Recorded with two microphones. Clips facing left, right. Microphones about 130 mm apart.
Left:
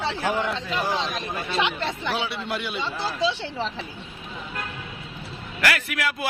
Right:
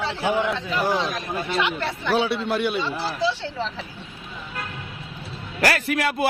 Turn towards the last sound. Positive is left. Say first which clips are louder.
# right 5 dB
turn(degrees=-30)  # may be behind; listen again after turning